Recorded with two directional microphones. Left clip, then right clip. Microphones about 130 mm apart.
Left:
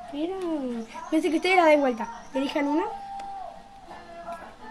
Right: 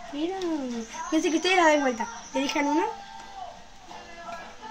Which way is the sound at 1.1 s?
30° left (ahead or behind).